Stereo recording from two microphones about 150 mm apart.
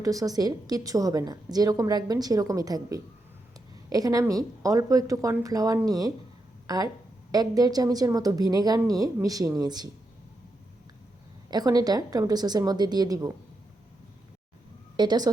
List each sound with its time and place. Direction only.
0.0 s a woman's voice: 20° right (ahead or behind)
11.5 s a woman's voice: 25° right (ahead or behind)
14.9 s a woman's voice: 30° right (ahead or behind)